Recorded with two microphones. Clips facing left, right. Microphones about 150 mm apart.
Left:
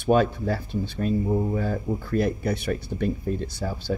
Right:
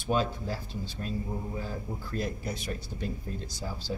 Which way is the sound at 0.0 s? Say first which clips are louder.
Left 8 dB; 60° left (ahead or behind).